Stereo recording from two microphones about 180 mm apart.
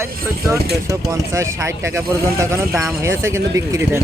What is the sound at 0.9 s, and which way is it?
Speech, 15° right (ahead or behind).